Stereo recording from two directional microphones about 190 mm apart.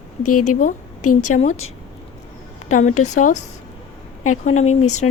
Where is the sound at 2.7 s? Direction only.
40° left (ahead or behind).